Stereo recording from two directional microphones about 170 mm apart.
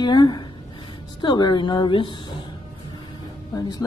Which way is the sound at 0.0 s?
25° left (ahead or behind).